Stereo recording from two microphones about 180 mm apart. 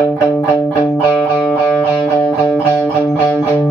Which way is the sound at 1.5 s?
15° left (ahead or behind).